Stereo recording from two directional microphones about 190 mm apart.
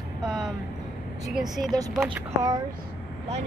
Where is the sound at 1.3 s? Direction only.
Centre (ahead or behind).